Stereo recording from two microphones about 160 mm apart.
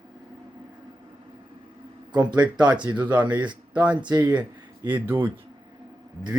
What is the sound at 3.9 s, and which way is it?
Speech, 30° right (ahead or behind).